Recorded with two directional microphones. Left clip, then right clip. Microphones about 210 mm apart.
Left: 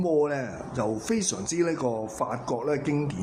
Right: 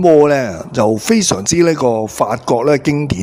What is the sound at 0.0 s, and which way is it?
Speech, 45° right (ahead or behind).